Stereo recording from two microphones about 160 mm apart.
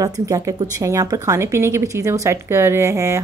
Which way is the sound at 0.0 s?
20° right (ahead or behind).